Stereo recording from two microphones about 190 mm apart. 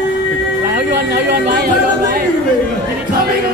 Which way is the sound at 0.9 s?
55° right (ahead or behind).